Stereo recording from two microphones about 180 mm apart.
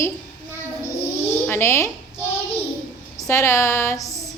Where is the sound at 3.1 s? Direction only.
15° left (ahead or behind).